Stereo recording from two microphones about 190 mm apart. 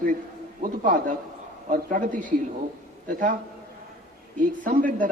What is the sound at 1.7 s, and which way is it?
A man's voice, 45° right (ahead or behind).